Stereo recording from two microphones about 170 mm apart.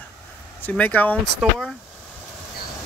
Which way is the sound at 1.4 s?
Centre (ahead or behind).